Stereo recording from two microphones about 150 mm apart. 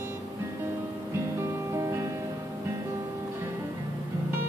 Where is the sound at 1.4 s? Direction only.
20° right (ahead or behind).